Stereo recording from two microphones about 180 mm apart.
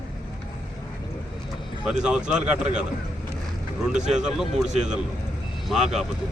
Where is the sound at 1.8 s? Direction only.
5° right (ahead or behind).